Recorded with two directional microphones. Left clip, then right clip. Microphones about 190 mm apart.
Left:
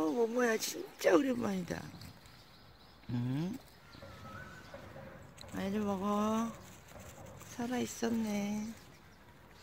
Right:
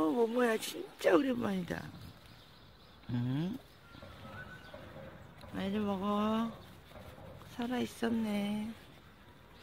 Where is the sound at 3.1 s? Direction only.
Centre (ahead or behind).